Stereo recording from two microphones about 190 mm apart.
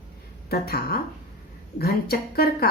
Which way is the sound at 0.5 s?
55° left (ahead or behind).